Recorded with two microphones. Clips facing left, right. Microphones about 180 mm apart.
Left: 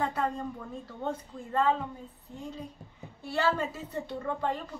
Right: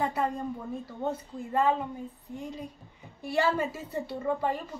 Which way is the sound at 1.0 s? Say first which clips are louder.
Right 2 dB; 10° right (ahead or behind).